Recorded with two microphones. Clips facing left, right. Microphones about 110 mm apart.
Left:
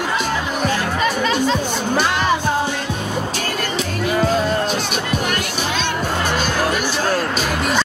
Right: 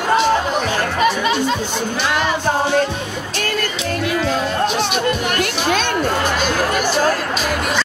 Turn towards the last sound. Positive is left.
turn(degrees=-45)  # may be behind; listen again after turning